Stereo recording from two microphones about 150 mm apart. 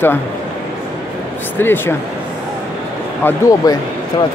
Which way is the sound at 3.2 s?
20° left (ahead or behind).